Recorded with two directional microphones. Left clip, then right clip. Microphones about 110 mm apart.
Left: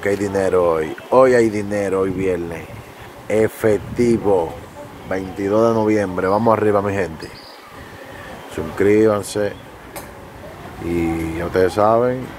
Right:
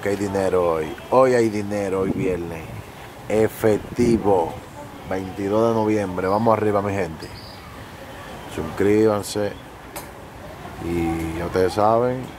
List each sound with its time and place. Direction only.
0.0 s speech: centre (ahead or behind)
3.3 s speech: 15° right (ahead or behind)
5.1 s speech: 5° left (ahead or behind)
8.7 s speech: 5° right (ahead or behind)
11.0 s speech: centre (ahead or behind)